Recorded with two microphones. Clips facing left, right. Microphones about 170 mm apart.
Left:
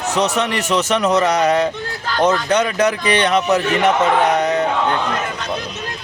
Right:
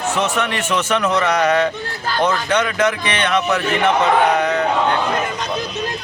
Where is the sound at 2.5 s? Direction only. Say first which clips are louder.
Left 1 dB; 35° left (ahead or behind).